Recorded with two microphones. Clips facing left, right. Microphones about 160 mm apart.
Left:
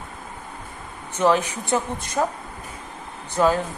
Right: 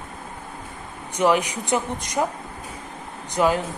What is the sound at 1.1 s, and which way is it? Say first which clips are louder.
Speech: even; 15° right (ahead or behind).